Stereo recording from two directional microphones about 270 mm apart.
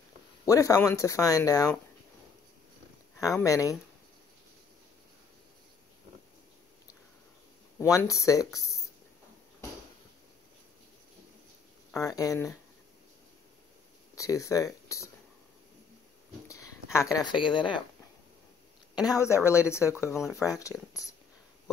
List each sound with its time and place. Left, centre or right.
0.5 s speech: centre
3.2 s speech: centre
7.8 s speech: centre
12.0 s speech: centre
14.1 s speech: centre
16.4 s a sound: centre
17.4 s speech: centre
18.9 s speech: centre
20.2 s speech: centre